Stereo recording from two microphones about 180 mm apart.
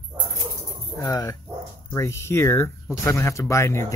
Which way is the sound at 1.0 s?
20° left (ahead or behind).